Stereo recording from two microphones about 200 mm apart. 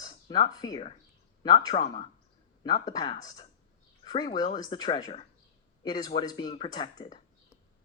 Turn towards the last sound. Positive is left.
turn(degrees=20)  # may be behind; listen again after turning